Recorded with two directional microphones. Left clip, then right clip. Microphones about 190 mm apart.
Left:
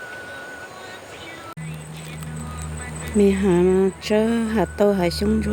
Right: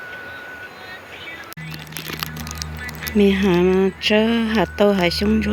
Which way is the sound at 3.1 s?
Centre (ahead or behind).